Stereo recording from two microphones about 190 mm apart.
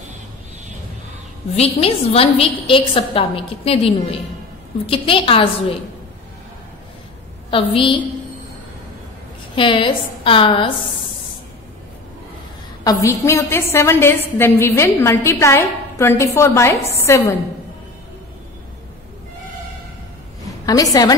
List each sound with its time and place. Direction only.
1.5 s a woman's voice: 30° left (ahead or behind)
7.5 s a woman's voice: 25° left (ahead or behind)
9.6 s a woman's voice: 25° left (ahead or behind)
12.8 s a woman's voice: 15° left (ahead or behind)
20.6 s a woman's voice: 20° left (ahead or behind)